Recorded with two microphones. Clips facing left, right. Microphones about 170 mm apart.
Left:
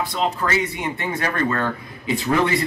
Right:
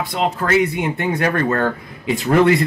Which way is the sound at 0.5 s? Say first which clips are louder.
Right 6 dB; 55° right (ahead or behind).